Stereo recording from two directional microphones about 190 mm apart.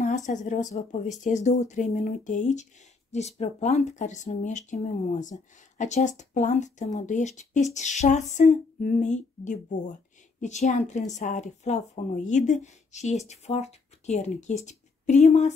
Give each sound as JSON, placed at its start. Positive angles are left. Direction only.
{"t": 0.3, "sound": "speech", "side_deg": 40}